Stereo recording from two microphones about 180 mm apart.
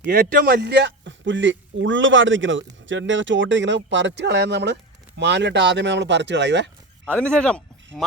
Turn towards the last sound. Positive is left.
turn(degrees=5)  # may be behind; listen again after turning